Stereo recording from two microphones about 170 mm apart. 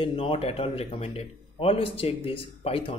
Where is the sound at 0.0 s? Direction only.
30° left (ahead or behind).